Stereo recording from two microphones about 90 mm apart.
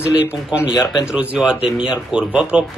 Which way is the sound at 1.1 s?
5° right (ahead or behind).